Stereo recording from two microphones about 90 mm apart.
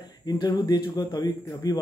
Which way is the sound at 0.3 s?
50° left (ahead or behind).